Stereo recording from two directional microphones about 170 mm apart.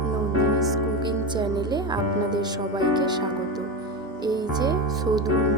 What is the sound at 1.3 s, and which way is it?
Speech, 25° right (ahead or behind).